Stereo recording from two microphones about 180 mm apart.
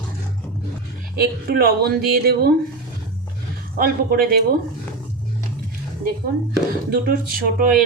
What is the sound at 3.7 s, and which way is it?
Speech, 55° right (ahead or behind).